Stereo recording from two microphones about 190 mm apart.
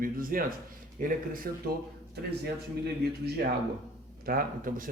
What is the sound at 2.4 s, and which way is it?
A man's voice, 55° right (ahead or behind).